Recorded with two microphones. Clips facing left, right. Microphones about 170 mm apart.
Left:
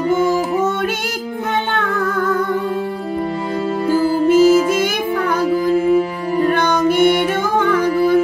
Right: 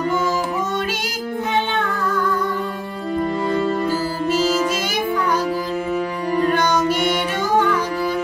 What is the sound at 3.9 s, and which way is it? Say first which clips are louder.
Music: left 8 dB; 55° left (ahead or behind).